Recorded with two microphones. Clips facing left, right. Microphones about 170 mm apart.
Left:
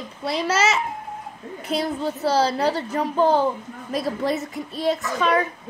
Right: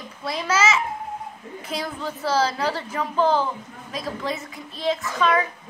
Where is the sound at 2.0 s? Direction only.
35° left (ahead or behind).